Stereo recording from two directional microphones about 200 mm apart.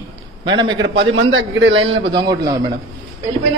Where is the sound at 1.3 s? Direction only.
70° right (ahead or behind).